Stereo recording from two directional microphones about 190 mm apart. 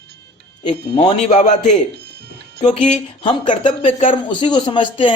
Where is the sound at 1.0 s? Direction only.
35° left (ahead or behind).